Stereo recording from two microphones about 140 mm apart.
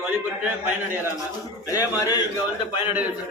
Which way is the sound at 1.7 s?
25° left (ahead or behind).